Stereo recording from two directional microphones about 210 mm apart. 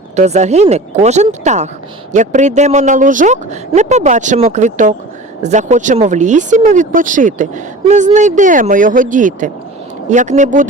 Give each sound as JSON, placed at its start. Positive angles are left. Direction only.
{"t": 0.2, "sound": "speech", "side_deg": -35}